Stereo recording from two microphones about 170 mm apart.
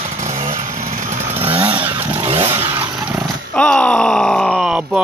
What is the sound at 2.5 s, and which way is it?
Vehicle, 15° right (ahead or behind).